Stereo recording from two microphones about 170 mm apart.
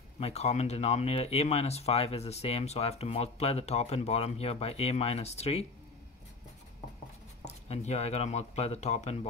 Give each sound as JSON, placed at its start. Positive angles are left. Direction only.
{"t": 0.2, "sound": "speech", "side_deg": 40}
{"t": 7.4, "sound": "speech", "side_deg": 40}